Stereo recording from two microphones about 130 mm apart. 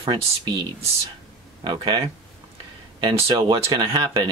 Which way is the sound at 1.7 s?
35° right (ahead or behind).